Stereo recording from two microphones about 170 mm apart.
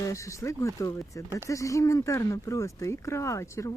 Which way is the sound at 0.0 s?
20° left (ahead or behind).